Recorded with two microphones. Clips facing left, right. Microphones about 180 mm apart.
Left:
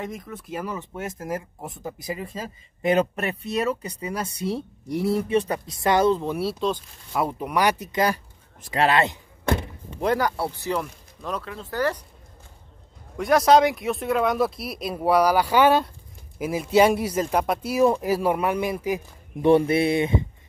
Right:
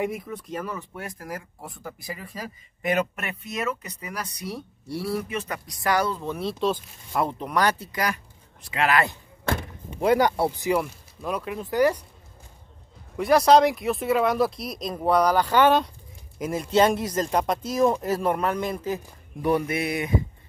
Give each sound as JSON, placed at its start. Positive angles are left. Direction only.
{"t": 0.0, "sound": "speech", "side_deg": -10}
{"t": 0.3, "sound": "speech", "side_deg": 5}
{"t": 0.7, "sound": "speech", "side_deg": 20}
{"t": 6.3, "sound": "speech", "side_deg": 5}
{"t": 7.2, "sound": "speech", "side_deg": 10}
{"t": 9.8, "sound": "a sound", "side_deg": -10}
{"t": 10.1, "sound": "speech", "side_deg": -20}
{"t": 13.2, "sound": "speech", "side_deg": 0}
{"t": 19.4, "sound": "speech", "side_deg": 30}